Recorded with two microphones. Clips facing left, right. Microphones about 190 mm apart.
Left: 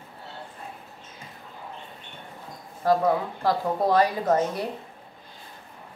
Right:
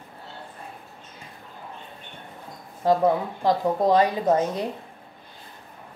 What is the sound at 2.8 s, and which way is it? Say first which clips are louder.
Speech: right 2 dB; 20° right (ahead or behind).